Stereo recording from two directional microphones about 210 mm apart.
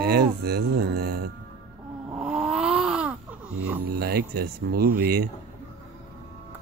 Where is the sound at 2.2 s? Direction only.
Centre (ahead or behind).